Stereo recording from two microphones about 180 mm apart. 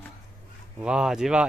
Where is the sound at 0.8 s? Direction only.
5° right (ahead or behind).